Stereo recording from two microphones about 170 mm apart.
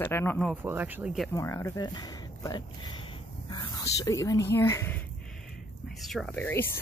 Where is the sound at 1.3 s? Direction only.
15° left (ahead or behind).